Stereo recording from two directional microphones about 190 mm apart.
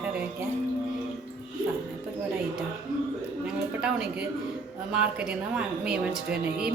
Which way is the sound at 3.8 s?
5° right (ahead or behind).